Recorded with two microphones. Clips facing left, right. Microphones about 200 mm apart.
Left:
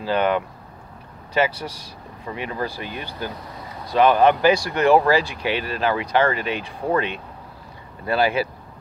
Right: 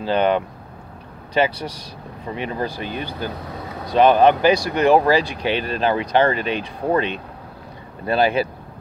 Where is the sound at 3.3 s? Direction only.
60° right (ahead or behind).